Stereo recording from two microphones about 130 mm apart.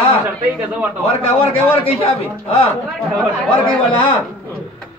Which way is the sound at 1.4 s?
45° left (ahead or behind).